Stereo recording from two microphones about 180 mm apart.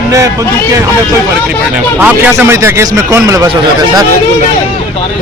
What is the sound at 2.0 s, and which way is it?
Speech, 10° right (ahead or behind).